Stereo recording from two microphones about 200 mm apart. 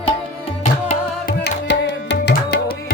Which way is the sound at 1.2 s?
55° left (ahead or behind).